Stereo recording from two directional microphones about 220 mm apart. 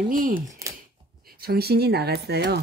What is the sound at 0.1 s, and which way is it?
Speech, 40° right (ahead or behind).